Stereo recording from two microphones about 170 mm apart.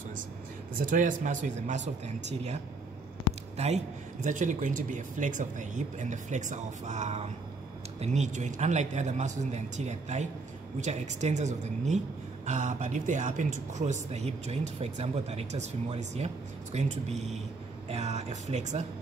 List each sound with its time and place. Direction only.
0.7 s speech: 50° right (ahead or behind)
3.5 s speech: 40° right (ahead or behind)